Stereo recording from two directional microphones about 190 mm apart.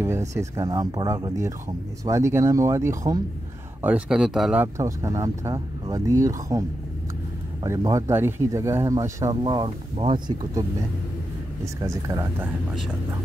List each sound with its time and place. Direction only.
0.0 s speech: 15° right (ahead or behind)
3.8 s speech: 5° right (ahead or behind)
7.6 s speech: 15° right (ahead or behind)
11.6 s speech: 15° right (ahead or behind)